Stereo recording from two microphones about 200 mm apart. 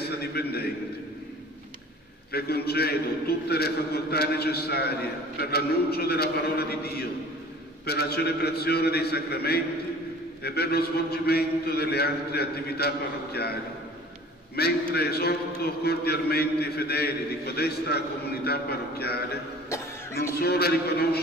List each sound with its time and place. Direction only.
0.0 s a man's voice: 50° left (ahead or behind)
2.3 s a man's voice: 50° left (ahead or behind)
14.6 s a man's voice: 50° left (ahead or behind)
20.3 s a man's voice: 50° left (ahead or behind)